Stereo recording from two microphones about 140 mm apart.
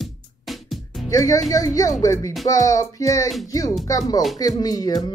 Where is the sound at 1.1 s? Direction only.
25° left (ahead or behind).